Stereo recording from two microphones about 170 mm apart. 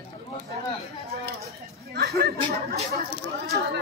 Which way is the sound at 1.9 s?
70° right (ahead or behind).